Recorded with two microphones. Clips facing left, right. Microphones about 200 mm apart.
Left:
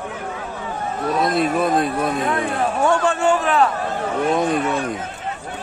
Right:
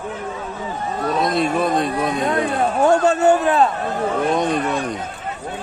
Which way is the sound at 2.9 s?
40° right (ahead or behind).